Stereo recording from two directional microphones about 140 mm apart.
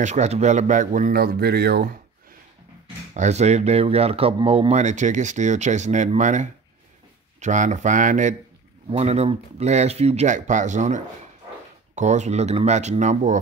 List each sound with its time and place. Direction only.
0.0 s speech: 55° right (ahead or behind); by 2.0 s 90° right
3.2 s speech: 55° right (ahead or behind)
8.8 s speech: 50° right (ahead or behind)